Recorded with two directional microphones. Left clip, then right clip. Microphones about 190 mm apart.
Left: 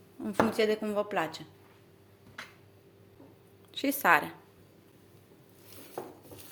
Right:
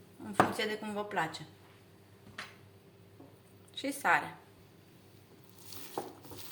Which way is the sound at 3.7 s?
60° left (ahead or behind).